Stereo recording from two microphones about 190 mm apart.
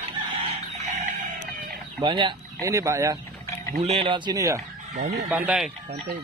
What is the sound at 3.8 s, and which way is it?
Speech, 30° right (ahead or behind).